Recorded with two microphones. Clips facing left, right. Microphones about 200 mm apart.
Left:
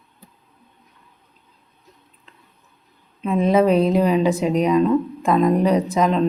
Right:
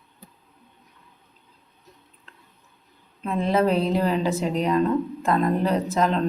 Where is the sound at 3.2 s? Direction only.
15° left (ahead or behind).